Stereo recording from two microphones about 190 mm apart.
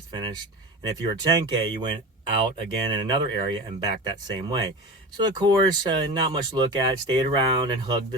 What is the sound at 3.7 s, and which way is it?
Speech, 25° right (ahead or behind).